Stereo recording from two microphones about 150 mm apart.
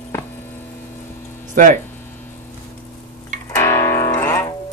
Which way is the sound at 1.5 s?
55° right (ahead or behind).